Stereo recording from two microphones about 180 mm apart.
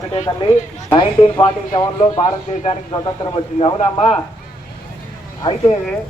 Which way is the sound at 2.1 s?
35° left (ahead or behind).